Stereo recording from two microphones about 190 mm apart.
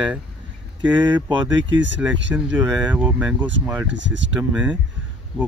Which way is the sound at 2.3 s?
10° right (ahead or behind).